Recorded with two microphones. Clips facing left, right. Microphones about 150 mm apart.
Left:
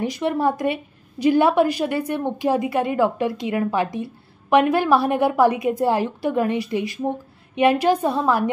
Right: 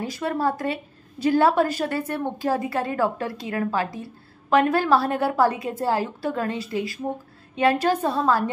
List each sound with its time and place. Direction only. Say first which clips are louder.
0.0 s a woman's voice: left 4 dB; 20° left (ahead or behind)